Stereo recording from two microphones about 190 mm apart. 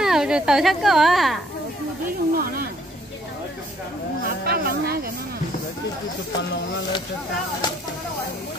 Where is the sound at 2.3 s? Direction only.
50° right (ahead or behind).